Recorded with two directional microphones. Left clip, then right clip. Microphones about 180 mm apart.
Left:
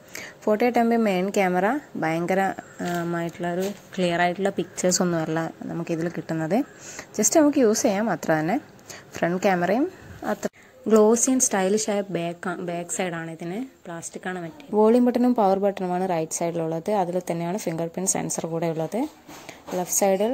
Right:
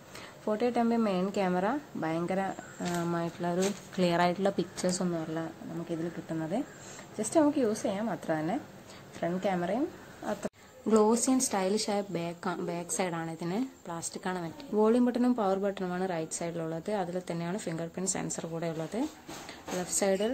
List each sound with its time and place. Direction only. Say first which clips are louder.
0.5 s a woman's voice: left 8 dB; 25° left (ahead or behind); by 4.8 s 5° left (ahead or behind)
4.8 s a woman's voice: left 12 dB; 30° left (ahead or behind); by 14.5 s 10° left (ahead or behind)
14.8 s a woman's voice: left 8 dB; 25° left (ahead or behind)